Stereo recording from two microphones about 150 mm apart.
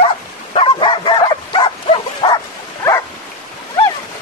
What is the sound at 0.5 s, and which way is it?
Bow-wow, 35° left (ahead or behind).